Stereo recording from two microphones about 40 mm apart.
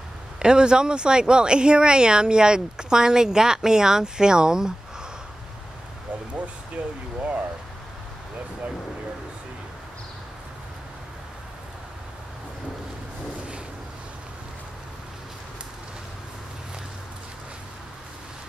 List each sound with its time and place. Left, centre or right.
0.4 s speech: right
6.8 s speech: right
7.2 s a sound: right